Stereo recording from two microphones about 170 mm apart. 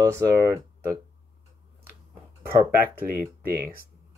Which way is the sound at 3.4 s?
15° right (ahead or behind).